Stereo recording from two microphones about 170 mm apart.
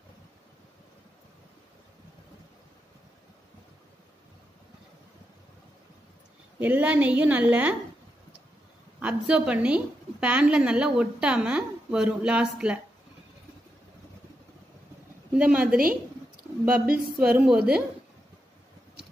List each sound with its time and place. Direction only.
6.6 s a woman's voice: 10° right (ahead or behind)
9.0 s a woman's voice: 5° right (ahead or behind)
15.3 s a woman's voice: 5° right (ahead or behind)
16.4 s a sound: 60° right (ahead or behind)
16.7 s speech: 60° right (ahead or behind)
17.5 s a woman's voice: 5° right (ahead or behind)